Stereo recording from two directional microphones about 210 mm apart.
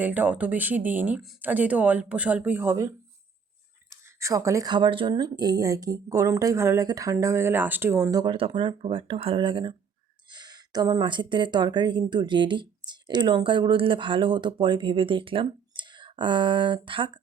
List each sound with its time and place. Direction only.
0.0 s speech: 10° right (ahead or behind); by 17.1 s 25° right (ahead or behind)